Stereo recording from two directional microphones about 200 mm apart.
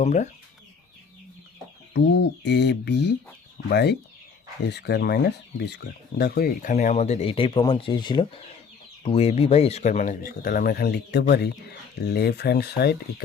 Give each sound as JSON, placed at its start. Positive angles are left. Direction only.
{"t": 0.0, "sound": "speech", "side_deg": 35}
{"t": 1.9, "sound": "speech", "side_deg": 60}